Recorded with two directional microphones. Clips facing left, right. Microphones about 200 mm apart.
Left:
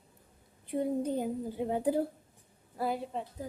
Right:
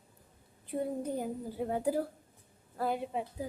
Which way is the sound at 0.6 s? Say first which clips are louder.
Left 3 dB; 20° left (ahead or behind).